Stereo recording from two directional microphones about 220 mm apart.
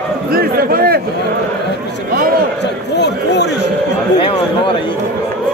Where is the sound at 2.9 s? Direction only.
50° left (ahead or behind).